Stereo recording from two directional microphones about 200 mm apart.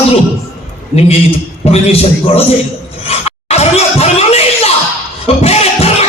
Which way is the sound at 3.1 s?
30° left (ahead or behind).